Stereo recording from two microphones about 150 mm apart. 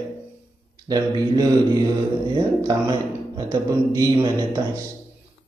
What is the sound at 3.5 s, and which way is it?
A man's voice, 30° right (ahead or behind).